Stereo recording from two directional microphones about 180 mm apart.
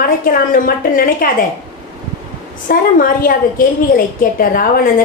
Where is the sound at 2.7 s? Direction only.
50° left (ahead or behind).